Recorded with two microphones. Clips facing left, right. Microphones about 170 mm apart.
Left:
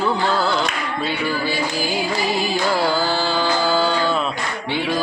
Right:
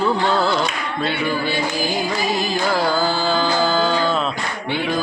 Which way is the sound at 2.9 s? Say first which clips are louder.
Right 1 dB; 5° left (ahead or behind).